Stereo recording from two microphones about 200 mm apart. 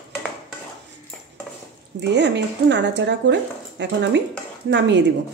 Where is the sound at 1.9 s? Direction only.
60° right (ahead or behind).